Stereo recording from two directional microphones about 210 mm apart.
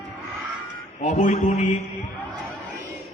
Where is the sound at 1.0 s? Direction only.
35° left (ahead or behind).